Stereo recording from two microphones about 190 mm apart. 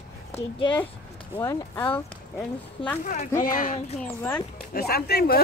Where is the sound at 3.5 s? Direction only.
45° left (ahead or behind).